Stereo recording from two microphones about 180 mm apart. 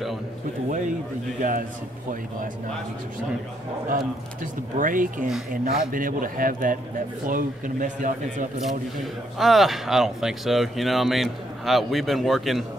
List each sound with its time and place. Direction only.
0.7 s a sound: 45° right (ahead or behind)
1.4 s a man's voice: 45° right (ahead or behind)
4.4 s a man's voice: 45° right (ahead or behind)
8.6 s a man's voice: centre (ahead or behind)